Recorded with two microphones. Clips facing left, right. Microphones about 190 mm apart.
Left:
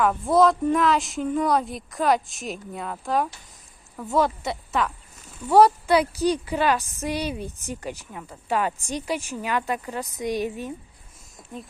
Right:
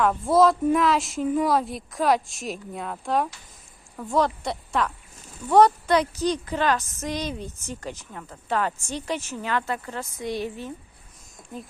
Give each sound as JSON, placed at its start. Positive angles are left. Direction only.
{"t": 0.0, "sound": "a woman's voice", "side_deg": 0}